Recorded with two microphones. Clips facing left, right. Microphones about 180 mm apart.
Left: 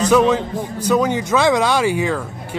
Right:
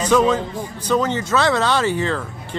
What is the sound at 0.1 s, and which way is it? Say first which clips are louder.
Speech: even; 10° left (ahead or behind).